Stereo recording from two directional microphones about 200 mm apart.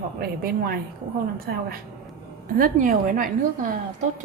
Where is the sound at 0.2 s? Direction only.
50° right (ahead or behind).